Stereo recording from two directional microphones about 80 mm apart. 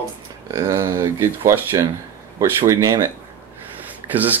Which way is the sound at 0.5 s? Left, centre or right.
Right.